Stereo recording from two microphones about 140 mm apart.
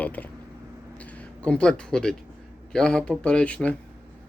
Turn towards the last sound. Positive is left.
turn(degrees=10)  # may be behind; listen again after turning